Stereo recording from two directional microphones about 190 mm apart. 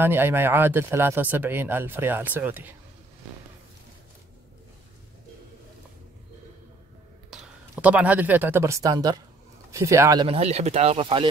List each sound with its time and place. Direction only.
0.0 s speech: 10° right (ahead or behind)
7.2 s speech: 5° right (ahead or behind)
10.2 s speech: 30° right (ahead or behind)